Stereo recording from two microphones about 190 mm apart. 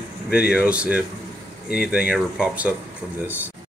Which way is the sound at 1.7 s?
55° left (ahead or behind).